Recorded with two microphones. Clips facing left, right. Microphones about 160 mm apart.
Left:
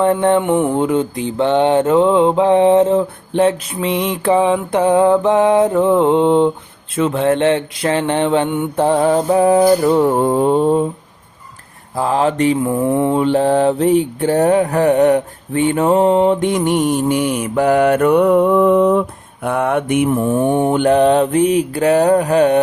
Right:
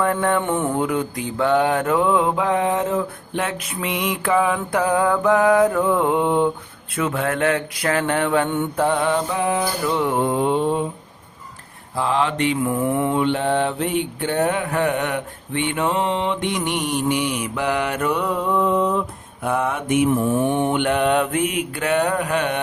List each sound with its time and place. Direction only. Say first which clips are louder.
0.0 s mantra: left 6 dB; 25° left (ahead or behind); by 10.8 s 40° left (ahead or behind)
11.9 s mantra: left 5 dB; 40° left (ahead or behind)
12.5 s mantra: left 5 dB; 30° left (ahead or behind); by 20.1 s 60° left (ahead or behind)
20.1 s mantra: left 4 dB; 45° left (ahead or behind)